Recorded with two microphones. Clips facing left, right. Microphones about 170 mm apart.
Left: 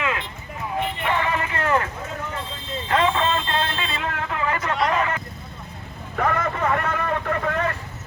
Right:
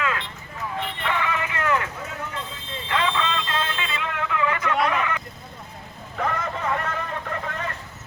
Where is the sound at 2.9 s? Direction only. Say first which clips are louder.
Left 4 dB; 40° left (ahead or behind).